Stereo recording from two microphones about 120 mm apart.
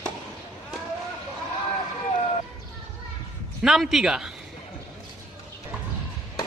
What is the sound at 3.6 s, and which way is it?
Speech, 5° right (ahead or behind).